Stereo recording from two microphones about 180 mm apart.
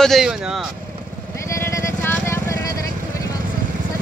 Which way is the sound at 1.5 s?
15° left (ahead or behind).